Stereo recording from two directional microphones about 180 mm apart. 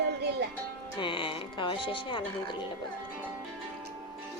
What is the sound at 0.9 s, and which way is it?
A woman's voice, 25° left (ahead or behind).